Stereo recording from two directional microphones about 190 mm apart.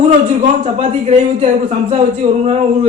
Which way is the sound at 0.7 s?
35° right (ahead or behind).